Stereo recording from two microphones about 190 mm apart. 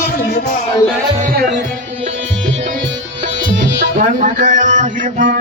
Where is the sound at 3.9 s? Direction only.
40° right (ahead or behind).